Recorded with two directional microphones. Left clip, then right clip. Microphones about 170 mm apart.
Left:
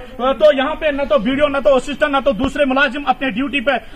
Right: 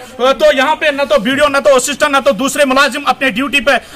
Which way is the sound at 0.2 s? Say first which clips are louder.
Right 3 dB; 20° right (ahead or behind).